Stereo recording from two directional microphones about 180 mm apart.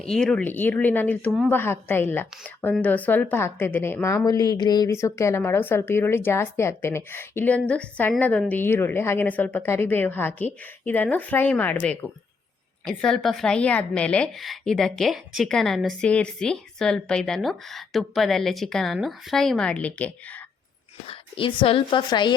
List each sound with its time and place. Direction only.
0.0 s a woman's voice: 5° left (ahead or behind)
21.1 s a woman's voice: 30° left (ahead or behind)